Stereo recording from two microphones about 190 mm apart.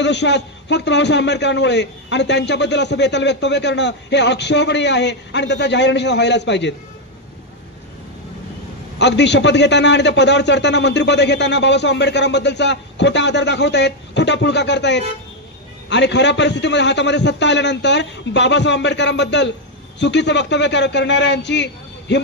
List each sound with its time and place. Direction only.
0.0 s a man's voice: 65° left (ahead or behind)
8.9 s a man's voice: 65° left (ahead or behind)